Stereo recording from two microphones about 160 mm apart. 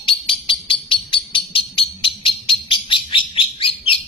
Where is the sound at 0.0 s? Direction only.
35° left (ahead or behind).